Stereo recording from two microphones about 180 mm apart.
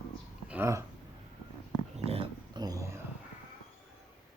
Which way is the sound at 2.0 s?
35° right (ahead or behind).